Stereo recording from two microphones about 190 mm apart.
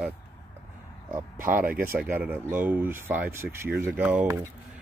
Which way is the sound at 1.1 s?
10° right (ahead or behind).